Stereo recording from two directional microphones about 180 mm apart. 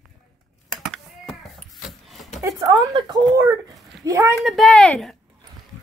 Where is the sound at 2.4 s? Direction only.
20° right (ahead or behind).